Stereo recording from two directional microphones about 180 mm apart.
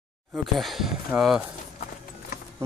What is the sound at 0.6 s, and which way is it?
Speech, centre (ahead or behind).